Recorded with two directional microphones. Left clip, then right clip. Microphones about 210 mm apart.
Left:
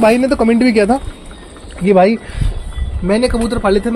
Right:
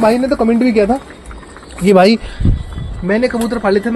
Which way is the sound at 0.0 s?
10° left (ahead or behind).